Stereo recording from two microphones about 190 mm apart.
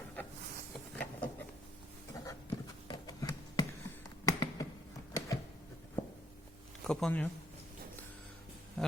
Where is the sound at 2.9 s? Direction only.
20° left (ahead or behind).